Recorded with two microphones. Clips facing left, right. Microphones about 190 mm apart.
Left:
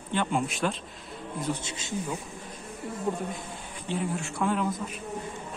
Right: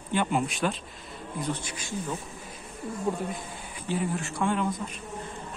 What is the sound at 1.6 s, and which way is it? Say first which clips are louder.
Speech: left 1 dB; 25° left (ahead or behind).